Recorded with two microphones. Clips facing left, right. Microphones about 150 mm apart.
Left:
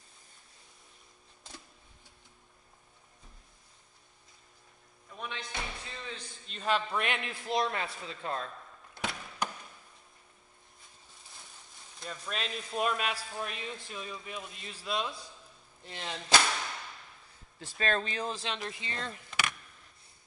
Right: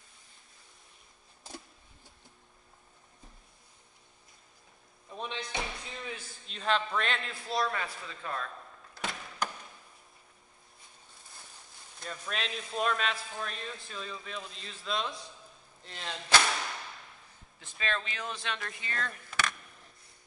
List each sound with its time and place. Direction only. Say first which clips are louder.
5.1 s slam: right 3 dB; 25° right (ahead or behind)
5.5 s a sound: right 3 dB; 15° right (ahead or behind)
6.4 s speech: even; centre (ahead or behind); by 8.5 s 30° left (ahead or behind)
12.0 s speech: even; centre (ahead or behind)
17.6 s speech: left 4 dB; 40° left (ahead or behind); by 19.5 s 20° left (ahead or behind)